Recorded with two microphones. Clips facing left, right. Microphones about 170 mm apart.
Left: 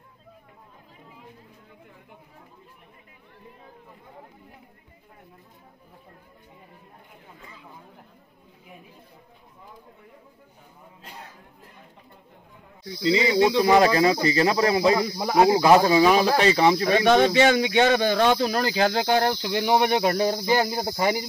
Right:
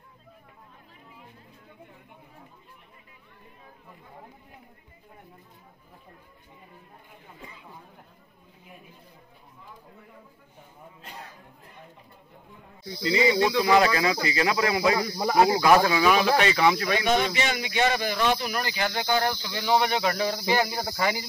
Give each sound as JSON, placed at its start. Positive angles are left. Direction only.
{"t": 13.1, "sound": "speech", "side_deg": 20}
{"t": 13.7, "sound": "a man's voice", "side_deg": 35}
{"t": 15.1, "sound": "speech", "side_deg": 5}
{"t": 15.6, "sound": "a man's voice", "side_deg": 25}
{"t": 17.4, "sound": "speech", "side_deg": 80}
{"t": 18.9, "sound": "speech", "side_deg": 70}
{"t": 19.5, "sound": "a man's voice", "side_deg": 50}